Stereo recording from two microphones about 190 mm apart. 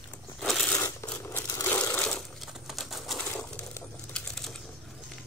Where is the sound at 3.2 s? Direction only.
10° left (ahead or behind).